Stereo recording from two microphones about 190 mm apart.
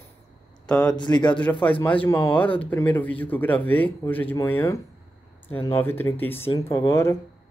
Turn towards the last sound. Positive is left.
turn(degrees=15)  # may be behind; listen again after turning